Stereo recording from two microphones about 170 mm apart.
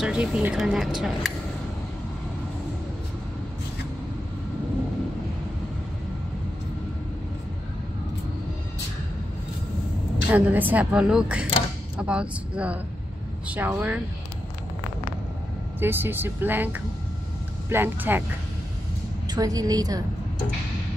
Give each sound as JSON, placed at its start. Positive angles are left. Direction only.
{"t": 0.0, "sound": "speech", "side_deg": -5}
{"t": 10.3, "sound": "a woman's voice", "side_deg": -10}
{"t": 15.8, "sound": "a woman's voice", "side_deg": -15}
{"t": 19.2, "sound": "a woman's voice", "side_deg": -20}